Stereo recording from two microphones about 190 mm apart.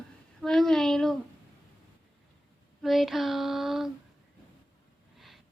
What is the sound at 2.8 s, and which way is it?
A woman's voice, centre (ahead or behind).